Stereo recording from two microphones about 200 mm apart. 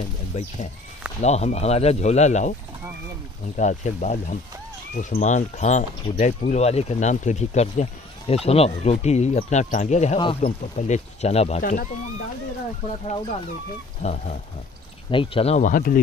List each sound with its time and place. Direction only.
1.2 s speech: 35° left (ahead or behind)
3.5 s speech: 35° left (ahead or behind)
13.0 s speech: 25° left (ahead or behind); by 16.0 s 45° left (ahead or behind)